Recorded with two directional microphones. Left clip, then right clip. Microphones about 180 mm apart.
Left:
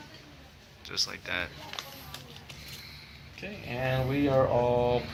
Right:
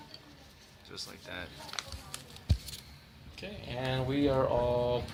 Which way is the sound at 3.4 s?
40° right (ahead or behind).